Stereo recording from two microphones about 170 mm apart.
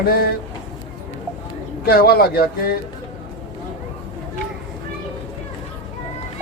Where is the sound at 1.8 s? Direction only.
65° left (ahead or behind).